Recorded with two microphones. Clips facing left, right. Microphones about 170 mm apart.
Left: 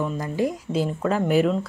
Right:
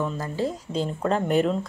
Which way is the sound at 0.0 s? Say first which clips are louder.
Left 2 dB; 15° left (ahead or behind).